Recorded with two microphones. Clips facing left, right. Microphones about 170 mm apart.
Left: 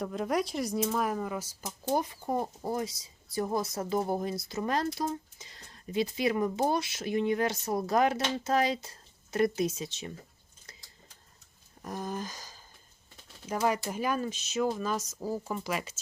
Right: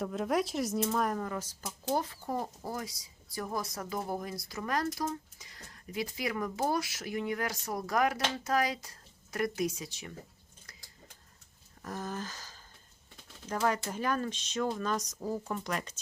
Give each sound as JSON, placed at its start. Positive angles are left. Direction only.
{"t": 0.0, "sound": "speech", "side_deg": 0}
{"t": 11.8, "sound": "a sound", "side_deg": 15}
{"t": 13.5, "sound": "speech", "side_deg": 10}